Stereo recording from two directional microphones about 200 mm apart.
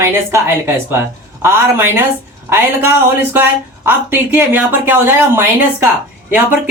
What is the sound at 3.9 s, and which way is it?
Speech, 10° right (ahead or behind).